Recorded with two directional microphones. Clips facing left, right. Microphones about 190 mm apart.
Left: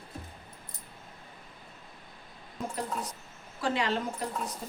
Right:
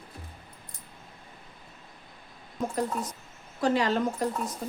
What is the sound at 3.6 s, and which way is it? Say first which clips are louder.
Speech: right 5 dB; 40° right (ahead or behind).